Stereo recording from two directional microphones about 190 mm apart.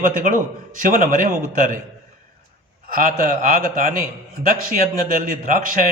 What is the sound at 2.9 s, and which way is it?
A man's voice, 45° right (ahead or behind).